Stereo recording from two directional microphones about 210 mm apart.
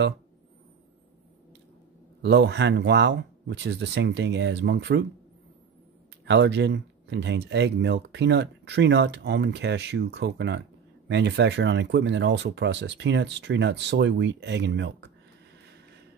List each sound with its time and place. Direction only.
2.2 s speech: 55° right (ahead or behind)
6.2 s speech: 55° right (ahead or behind)